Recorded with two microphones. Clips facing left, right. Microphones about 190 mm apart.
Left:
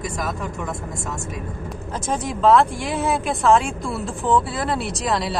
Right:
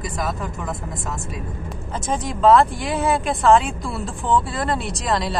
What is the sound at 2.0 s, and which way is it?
Speech, centre (ahead or behind).